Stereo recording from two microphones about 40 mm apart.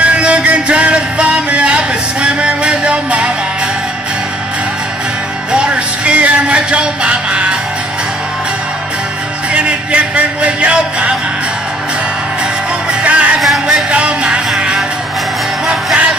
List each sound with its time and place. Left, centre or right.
0.0 s music: right
0.4 s a sound: right
5.5 s music: right
9.5 s music: right
13.0 s music: right
13.4 s a sound: centre
13.8 s music: right
15.6 s music: centre